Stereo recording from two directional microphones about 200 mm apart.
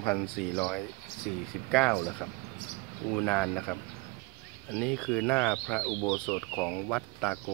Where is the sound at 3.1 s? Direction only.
5° left (ahead or behind).